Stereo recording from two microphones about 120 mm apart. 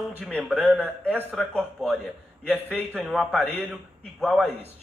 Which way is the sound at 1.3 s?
Centre (ahead or behind).